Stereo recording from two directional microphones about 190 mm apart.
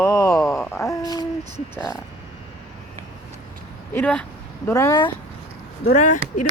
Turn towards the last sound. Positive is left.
turn(degrees=40)  # may be behind; listen again after turning